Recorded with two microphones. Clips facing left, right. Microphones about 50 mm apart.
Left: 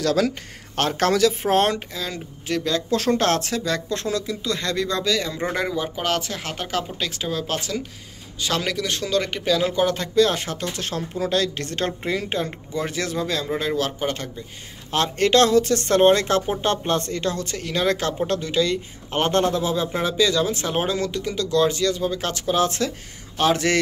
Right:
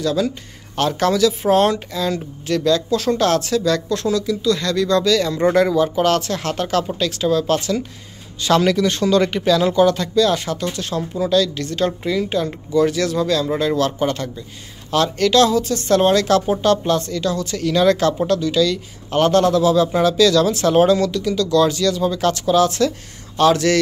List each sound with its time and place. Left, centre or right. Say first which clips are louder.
0.0 s speech: right 1 dB; left
0.7 s speech: right 3 dB; left
2.0 s speech: right 8 dB; centre
2.9 s speech: right 3 dB; left; by 7.7 s centre
8.4 s speech: right 9 dB; centre
9.8 s speech: right 4 dB; left
14.9 s speech: right 3 dB; left
15.5 s speech: left 1 dB; left
15.9 s speech: right 3 dB; left
17.6 s speech: right 9 dB; left